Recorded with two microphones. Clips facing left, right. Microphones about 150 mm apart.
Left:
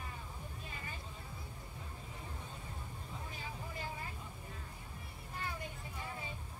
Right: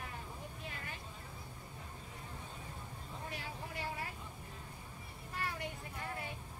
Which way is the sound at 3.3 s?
75° right (ahead or behind).